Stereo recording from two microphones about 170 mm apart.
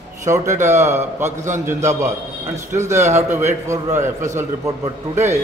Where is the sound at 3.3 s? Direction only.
15° right (ahead or behind).